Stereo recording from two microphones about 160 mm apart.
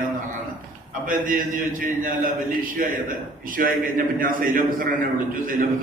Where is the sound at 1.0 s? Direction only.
65° right (ahead or behind).